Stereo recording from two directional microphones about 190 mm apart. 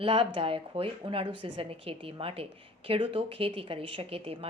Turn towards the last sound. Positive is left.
turn(degrees=-30)  # may be behind; listen again after turning